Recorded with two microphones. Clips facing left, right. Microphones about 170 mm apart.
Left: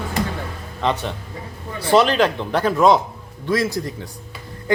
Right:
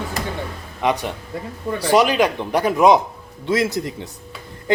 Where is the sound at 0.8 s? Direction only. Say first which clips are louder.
Right 1 dB; 15° right (ahead or behind).